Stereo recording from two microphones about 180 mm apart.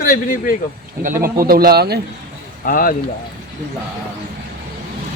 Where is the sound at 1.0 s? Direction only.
50° right (ahead or behind).